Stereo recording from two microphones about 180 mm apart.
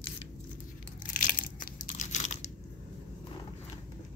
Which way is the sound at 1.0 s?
50° left (ahead or behind).